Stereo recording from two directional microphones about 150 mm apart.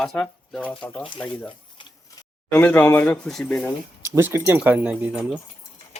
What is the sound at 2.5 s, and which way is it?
Speech, 10° left (ahead or behind).